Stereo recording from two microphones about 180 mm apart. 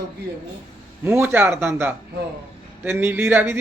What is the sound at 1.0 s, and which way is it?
A man's voice, 10° right (ahead or behind).